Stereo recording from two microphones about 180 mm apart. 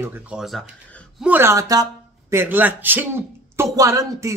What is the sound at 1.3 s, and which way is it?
Speech, 15° right (ahead or behind).